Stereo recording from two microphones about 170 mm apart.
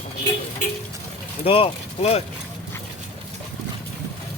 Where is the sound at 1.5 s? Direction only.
35° left (ahead or behind).